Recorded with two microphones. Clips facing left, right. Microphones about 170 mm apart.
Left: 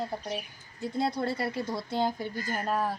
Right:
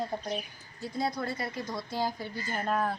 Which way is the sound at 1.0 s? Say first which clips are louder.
Left 3 dB; 30° left (ahead or behind).